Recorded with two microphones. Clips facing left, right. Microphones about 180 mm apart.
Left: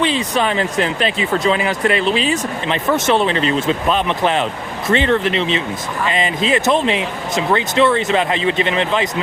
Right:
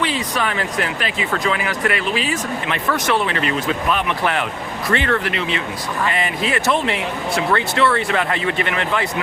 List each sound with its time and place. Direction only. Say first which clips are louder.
0.0 s speech: left 4 dB; 25° left (ahead or behind)